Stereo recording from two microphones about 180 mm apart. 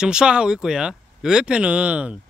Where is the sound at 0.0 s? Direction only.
5° right (ahead or behind).